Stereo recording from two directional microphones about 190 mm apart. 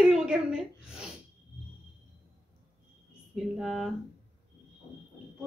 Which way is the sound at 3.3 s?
5° right (ahead or behind).